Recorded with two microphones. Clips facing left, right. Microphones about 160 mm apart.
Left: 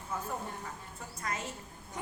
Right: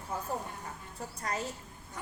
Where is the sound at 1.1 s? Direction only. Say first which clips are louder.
Right 2 dB; 35° right (ahead or behind).